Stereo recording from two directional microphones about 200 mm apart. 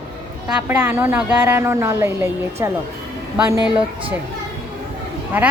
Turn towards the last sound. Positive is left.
turn(degrees=-10)  # may be behind; listen again after turning